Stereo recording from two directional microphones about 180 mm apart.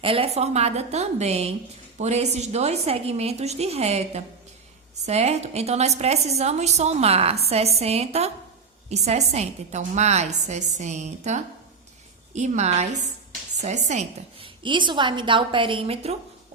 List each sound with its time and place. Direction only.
0.0 s a woman's voice: 30° right (ahead or behind)